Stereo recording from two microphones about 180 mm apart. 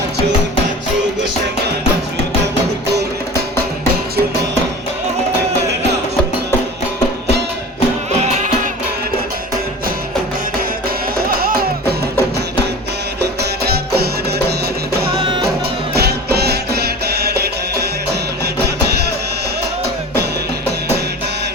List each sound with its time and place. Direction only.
11.2 s music: 55° right (ahead or behind)
13.2 s music: 60° right (ahead or behind)
15.2 s music: 25° right (ahead or behind)
16.0 s music: 60° right (ahead or behind)